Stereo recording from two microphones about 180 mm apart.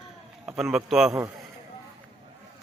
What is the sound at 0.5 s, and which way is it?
Speech, centre (ahead or behind).